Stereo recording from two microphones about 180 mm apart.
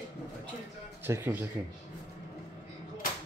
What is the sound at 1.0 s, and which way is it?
Speech, 10° right (ahead or behind).